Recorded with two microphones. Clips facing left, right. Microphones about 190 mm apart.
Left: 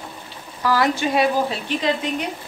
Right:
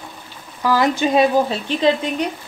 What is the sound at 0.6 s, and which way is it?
Speech, 20° right (ahead or behind).